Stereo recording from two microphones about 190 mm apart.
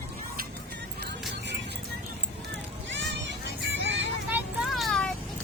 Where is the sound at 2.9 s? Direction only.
75° right (ahead or behind).